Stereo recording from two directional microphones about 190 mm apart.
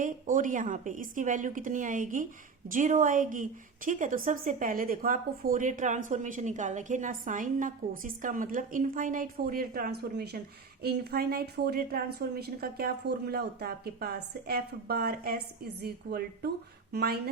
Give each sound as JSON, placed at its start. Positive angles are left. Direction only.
{"t": 0.0, "sound": "a woman's voice", "side_deg": -45}